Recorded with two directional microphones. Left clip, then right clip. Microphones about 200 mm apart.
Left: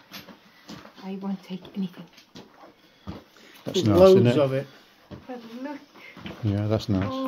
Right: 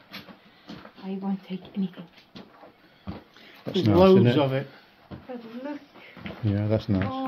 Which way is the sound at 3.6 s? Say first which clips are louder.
Left 1 dB; 20° left (ahead or behind).